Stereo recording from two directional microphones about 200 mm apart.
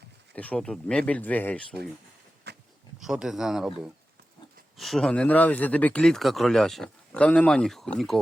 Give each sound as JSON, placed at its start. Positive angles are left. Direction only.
{"t": 0.3, "sound": "speech", "side_deg": 5}
{"t": 2.5, "sound": "a sound", "side_deg": -55}
{"t": 3.0, "sound": "speech", "side_deg": 0}